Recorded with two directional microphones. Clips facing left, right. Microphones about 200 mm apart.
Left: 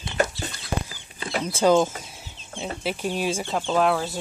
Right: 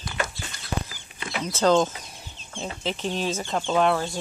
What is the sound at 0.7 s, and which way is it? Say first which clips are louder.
Chicken: left 1 dB; 45° left (ahead or behind).